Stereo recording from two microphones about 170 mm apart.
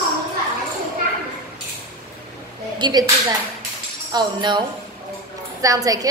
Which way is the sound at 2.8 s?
25° right (ahead or behind).